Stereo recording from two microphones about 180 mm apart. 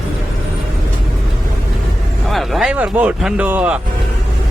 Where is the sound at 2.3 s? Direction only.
Centre (ahead or behind).